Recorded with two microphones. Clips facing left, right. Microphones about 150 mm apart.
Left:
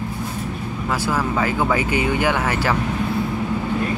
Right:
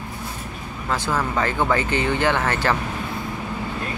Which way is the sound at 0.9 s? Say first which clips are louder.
Left 1 dB; 10° left (ahead or behind).